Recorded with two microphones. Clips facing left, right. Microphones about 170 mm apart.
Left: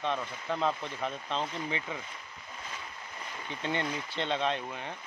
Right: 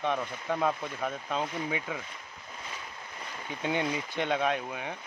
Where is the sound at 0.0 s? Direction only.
10° right (ahead or behind).